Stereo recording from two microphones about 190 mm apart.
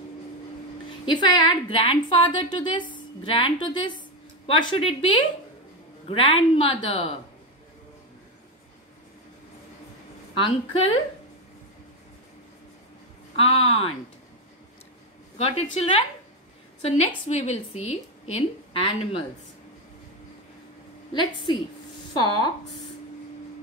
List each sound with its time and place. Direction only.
1.0 s a woman's voice: 25° left (ahead or behind)
10.3 s a woman's voice: 30° left (ahead or behind)
13.4 s a woman's voice: 30° left (ahead or behind)
15.3 s a woman's voice: 35° left (ahead or behind)
21.1 s a woman's voice: 25° left (ahead or behind)